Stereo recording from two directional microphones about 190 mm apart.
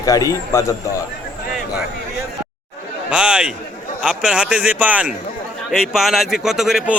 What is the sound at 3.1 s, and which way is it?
A man's voice, 5° right (ahead or behind).